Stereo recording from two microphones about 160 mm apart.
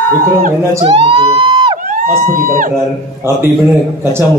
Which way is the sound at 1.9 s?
55° right (ahead or behind).